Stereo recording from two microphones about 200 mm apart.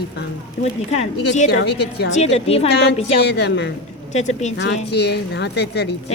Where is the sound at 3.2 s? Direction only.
55° left (ahead or behind).